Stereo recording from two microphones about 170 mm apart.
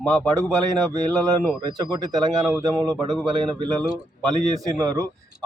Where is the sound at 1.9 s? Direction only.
25° right (ahead or behind).